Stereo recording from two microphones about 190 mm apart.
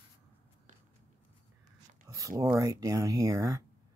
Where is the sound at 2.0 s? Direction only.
15° right (ahead or behind).